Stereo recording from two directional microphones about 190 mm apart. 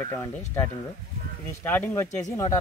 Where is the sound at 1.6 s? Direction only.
10° left (ahead or behind).